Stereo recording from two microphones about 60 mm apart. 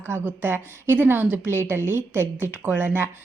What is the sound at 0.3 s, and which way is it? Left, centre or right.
A woman's voice, right.